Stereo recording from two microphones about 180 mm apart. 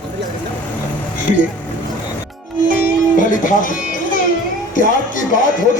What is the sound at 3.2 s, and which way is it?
Speech, 45° left (ahead or behind).